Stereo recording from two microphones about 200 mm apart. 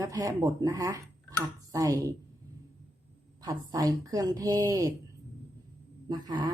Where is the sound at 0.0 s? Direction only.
15° right (ahead or behind).